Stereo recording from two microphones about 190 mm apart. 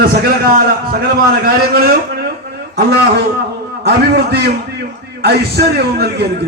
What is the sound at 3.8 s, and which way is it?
A man's voice, 55° right (ahead or behind).